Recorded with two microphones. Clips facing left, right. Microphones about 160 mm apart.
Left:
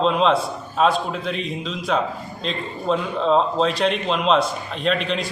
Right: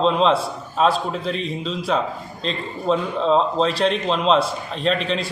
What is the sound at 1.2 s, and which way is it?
Speech, 35° right (ahead or behind).